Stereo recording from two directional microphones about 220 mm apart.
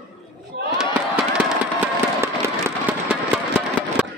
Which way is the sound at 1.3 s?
5° right (ahead or behind).